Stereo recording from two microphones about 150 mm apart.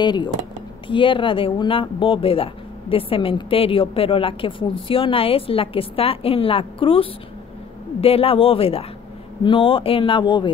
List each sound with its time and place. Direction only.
0.0 s speech: 30° left (ahead or behind)